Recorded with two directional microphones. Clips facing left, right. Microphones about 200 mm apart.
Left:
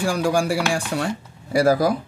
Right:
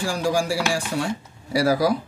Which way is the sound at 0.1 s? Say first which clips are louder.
Left 1 dB; 60° left (ahead or behind).